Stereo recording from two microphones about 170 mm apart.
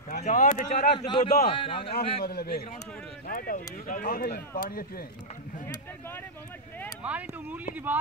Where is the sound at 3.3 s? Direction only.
55° left (ahead or behind).